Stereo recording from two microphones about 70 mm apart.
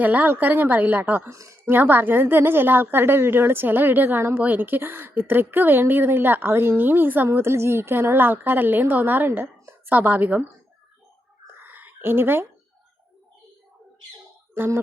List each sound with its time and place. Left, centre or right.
0.0 s a woman's voice: right
1.3 s speech: right
1.7 s a woman's voice: right
11.6 s a sound: right
14.5 s speech: right